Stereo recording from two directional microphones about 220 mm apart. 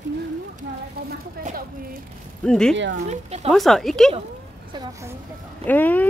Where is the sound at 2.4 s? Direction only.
5° left (ahead or behind).